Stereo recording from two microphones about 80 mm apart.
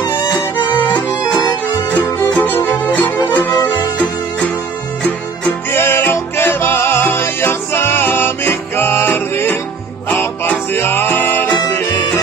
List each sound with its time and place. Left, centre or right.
0.4 s music: left
3.5 s music: left
5.0 s music: centre